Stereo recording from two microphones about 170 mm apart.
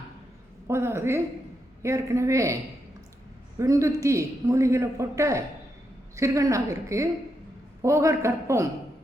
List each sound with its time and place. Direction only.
0.7 s a man's voice: 15° right (ahead or behind)
3.6 s a man's voice: 15° right (ahead or behind)